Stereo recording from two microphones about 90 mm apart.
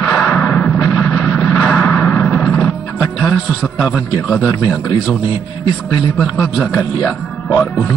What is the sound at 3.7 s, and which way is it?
Speech, 15° right (ahead or behind).